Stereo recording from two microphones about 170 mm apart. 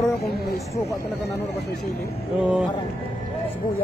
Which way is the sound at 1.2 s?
80° left.